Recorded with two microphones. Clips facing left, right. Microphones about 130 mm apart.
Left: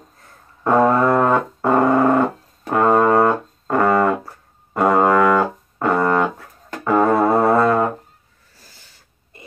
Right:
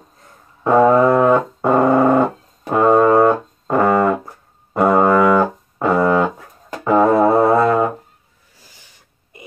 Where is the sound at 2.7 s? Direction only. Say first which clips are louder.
Right 2 dB; 20° right (ahead or behind).